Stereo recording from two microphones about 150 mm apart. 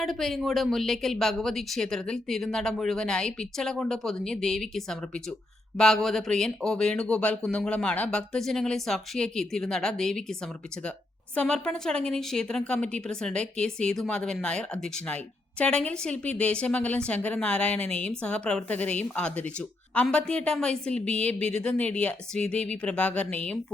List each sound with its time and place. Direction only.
0.0 s speech: centre (ahead or behind)
11.3 s a woman's voice: 5° left (ahead or behind)